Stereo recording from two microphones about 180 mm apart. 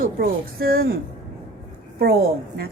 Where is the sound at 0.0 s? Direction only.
55° right (ahead or behind).